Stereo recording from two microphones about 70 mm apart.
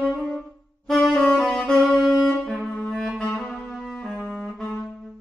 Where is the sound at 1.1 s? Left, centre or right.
Left.